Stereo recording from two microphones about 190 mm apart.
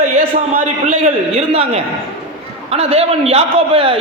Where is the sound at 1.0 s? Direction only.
35° right (ahead or behind).